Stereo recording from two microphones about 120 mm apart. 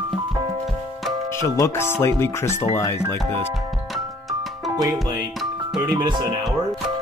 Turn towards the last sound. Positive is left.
turn(degrees=-35)  # may be behind; listen again after turning